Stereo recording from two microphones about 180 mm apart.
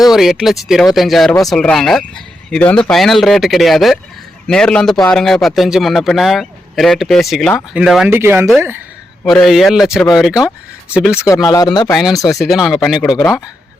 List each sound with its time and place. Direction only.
0.0 s speech: centre (ahead or behind)
9.2 s speech: centre (ahead or behind)
10.3 s speech: 20° left (ahead or behind)
10.9 s speech: 5° right (ahead or behind)
11.4 s speech: 20° left (ahead or behind)
11.9 s speech: centre (ahead or behind)